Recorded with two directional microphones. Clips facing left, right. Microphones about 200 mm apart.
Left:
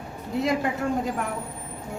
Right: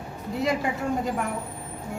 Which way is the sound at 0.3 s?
Centre (ahead or behind).